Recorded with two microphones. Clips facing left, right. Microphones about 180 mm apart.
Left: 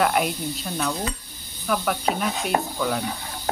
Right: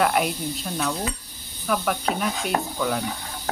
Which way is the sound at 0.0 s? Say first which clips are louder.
Even; centre (ahead or behind).